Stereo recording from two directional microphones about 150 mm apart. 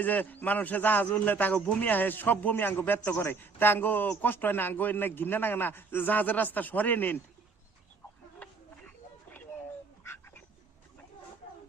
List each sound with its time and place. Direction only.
0.0 s a man's voice: 10° left (ahead or behind)
10.0 s dog: 15° left (ahead or behind)